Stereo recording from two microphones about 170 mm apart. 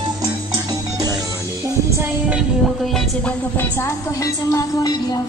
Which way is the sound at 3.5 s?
15° left (ahead or behind).